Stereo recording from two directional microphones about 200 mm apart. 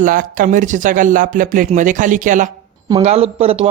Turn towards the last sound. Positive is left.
turn(degrees=-30)  # may be behind; listen again after turning